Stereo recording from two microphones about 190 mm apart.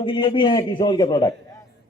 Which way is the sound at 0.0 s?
25° left (ahead or behind).